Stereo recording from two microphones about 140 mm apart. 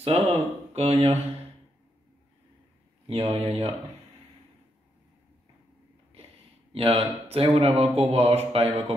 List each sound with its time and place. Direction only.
0.0 s speech: 45° right (ahead or behind)
3.1 s speech: 45° right (ahead or behind)
6.7 s speech: 45° right (ahead or behind)